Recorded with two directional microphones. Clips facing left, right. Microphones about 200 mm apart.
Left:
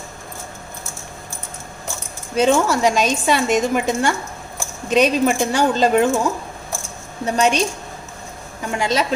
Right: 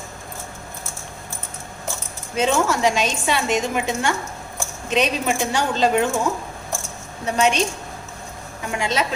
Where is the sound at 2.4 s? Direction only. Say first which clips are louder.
Left 3 dB; 40° left (ahead or behind).